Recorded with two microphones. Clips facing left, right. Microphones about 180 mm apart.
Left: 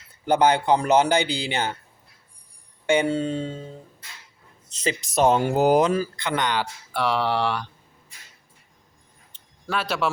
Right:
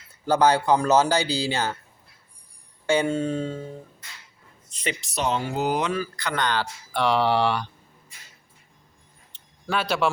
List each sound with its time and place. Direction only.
0.3 s speech: 25° left (ahead or behind)
2.8 s speech: 20° left (ahead or behind)
4.8 s speech: 40° left (ahead or behind)
6.1 s speech: 20° left (ahead or behind)
6.9 s speech: 5° left (ahead or behind)
9.3 s a sound: centre (ahead or behind)
9.6 s speech: centre (ahead or behind)